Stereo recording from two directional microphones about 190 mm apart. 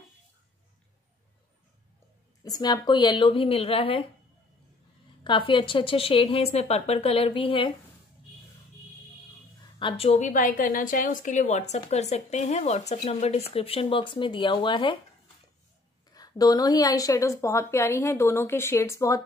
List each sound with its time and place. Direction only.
2.4 s a woman's voice: 20° left (ahead or behind)
5.2 s a woman's voice: 25° left (ahead or behind)
9.8 s speech: 30° left (ahead or behind)
16.1 s speech: 20° left (ahead or behind)